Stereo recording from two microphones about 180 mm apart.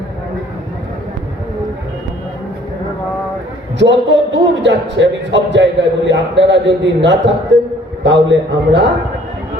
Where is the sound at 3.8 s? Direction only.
80° right.